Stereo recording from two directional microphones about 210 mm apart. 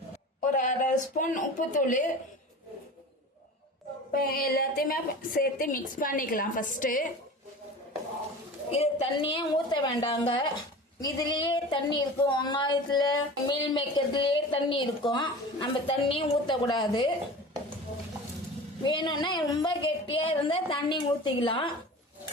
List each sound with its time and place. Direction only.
0.4 s speech: 35° left (ahead or behind)
4.1 s a woman's voice: 45° left (ahead or behind)
8.7 s a woman's voice: 25° left (ahead or behind)
18.9 s a woman's voice: 20° left (ahead or behind)